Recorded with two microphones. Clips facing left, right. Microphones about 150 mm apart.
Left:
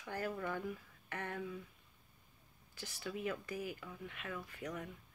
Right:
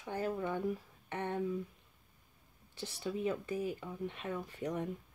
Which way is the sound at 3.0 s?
25° right (ahead or behind).